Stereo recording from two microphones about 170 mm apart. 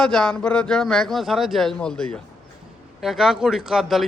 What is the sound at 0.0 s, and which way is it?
A man's voice, 5° left (ahead or behind).